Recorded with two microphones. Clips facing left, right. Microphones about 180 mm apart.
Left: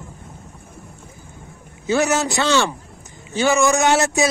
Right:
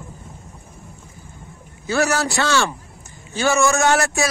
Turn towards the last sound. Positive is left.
turn(degrees=20)  # may be behind; listen again after turning